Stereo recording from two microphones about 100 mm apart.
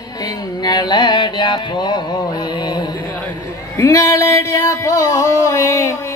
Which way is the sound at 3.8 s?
30° left (ahead or behind).